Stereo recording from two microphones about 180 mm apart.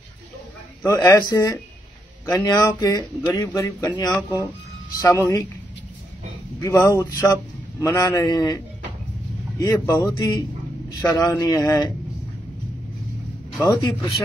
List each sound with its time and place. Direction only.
0.8 s a man's voice: 15° left (ahead or behind)
6.6 s a man's voice: 15° left (ahead or behind)
13.6 s speech: 20° left (ahead or behind)